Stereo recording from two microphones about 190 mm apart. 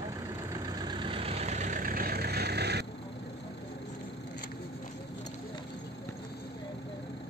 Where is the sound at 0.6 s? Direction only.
20° right (ahead or behind); by 2.8 s 60° right (ahead or behind).